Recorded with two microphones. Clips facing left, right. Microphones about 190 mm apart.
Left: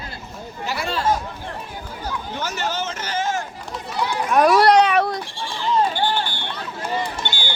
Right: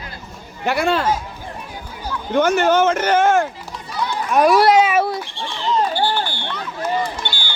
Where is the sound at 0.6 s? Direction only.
60° right (ahead or behind).